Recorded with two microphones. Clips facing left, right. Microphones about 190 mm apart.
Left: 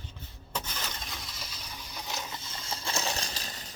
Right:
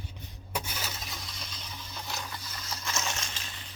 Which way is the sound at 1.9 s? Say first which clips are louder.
Left 1 dB; 20° left (ahead or behind).